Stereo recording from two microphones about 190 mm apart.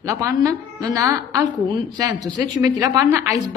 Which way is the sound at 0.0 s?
15° right (ahead or behind).